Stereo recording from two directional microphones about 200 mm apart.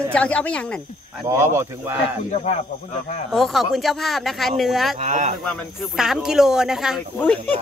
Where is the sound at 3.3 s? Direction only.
Centre (ahead or behind).